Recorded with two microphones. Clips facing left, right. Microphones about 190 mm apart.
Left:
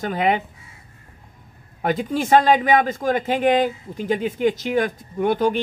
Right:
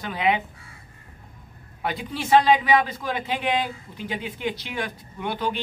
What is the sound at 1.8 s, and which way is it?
A man's voice, 45° left (ahead or behind).